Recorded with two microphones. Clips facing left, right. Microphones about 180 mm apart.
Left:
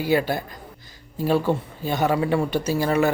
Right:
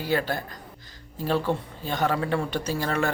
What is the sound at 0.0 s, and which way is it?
A man's voice, 10° left (ahead or behind).